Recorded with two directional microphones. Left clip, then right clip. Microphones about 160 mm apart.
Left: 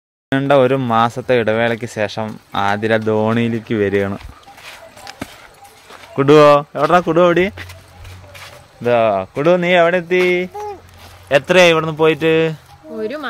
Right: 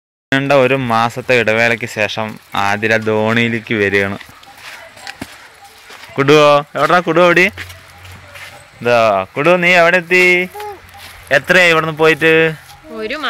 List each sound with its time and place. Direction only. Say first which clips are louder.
0.3 s speech: right 1 dB; 10° left (ahead or behind)
6.1 s speech: even; 5° left (ahead or behind)
8.8 s speech: right 3 dB; 5° left (ahead or behind)
13.0 s speech: right 3 dB; 55° left (ahead or behind)